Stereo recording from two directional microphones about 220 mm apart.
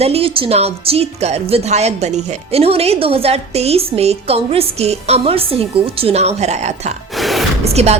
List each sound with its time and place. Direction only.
0.0 s speech: 25° right (ahead or behind)
7.1 s a sound: centre (ahead or behind)
7.6 s speech: 30° right (ahead or behind)